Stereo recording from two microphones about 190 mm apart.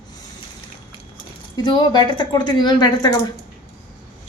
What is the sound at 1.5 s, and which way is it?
A woman's voice, 25° left (ahead or behind).